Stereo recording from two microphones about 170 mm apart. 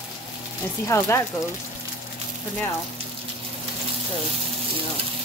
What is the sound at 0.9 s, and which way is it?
Speech, 15° left (ahead or behind).